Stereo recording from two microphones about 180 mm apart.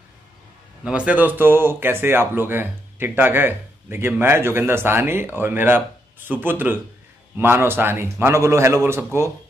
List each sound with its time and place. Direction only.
0.8 s speech: 5° right (ahead or behind)